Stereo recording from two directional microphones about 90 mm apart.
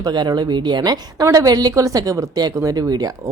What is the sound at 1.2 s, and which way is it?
Speech, 40° right (ahead or behind).